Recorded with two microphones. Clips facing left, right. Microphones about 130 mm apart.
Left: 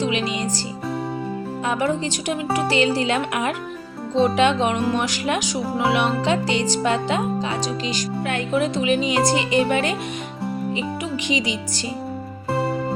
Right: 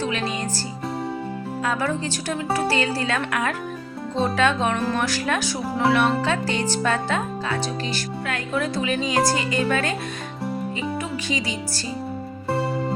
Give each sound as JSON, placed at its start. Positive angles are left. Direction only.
{"t": 0.0, "sound": "music", "side_deg": 15}
{"t": 1.6, "sound": "speech", "side_deg": 20}
{"t": 11.3, "sound": "speech", "side_deg": 20}